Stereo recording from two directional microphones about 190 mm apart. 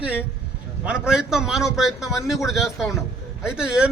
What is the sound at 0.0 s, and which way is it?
Speech, 5° right (ahead or behind).